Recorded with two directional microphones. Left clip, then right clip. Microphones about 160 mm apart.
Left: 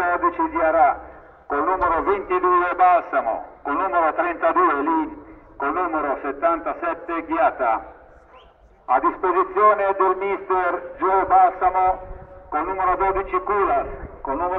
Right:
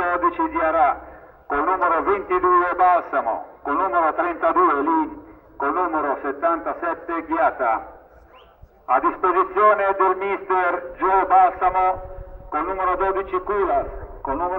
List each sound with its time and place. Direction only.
0.0 s a man's voice: 35° left (ahead or behind)
1.5 s speech: 50° left (ahead or behind)
8.8 s a man's voice: 50° left (ahead or behind); by 13.8 s 25° left (ahead or behind)
14.2 s a man's voice: centre (ahead or behind)